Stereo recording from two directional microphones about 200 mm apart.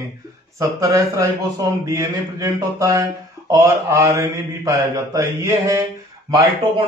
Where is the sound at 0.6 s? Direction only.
15° right (ahead or behind).